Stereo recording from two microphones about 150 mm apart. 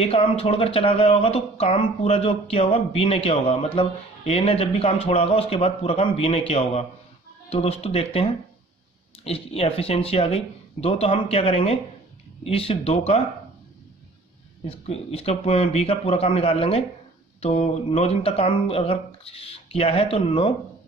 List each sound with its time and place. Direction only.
0.0 s speech: 40° left (ahead or behind)
14.7 s speech: 45° left (ahead or behind)